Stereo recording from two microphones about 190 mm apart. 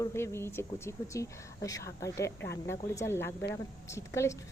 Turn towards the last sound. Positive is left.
turn(degrees=15)  # may be behind; listen again after turning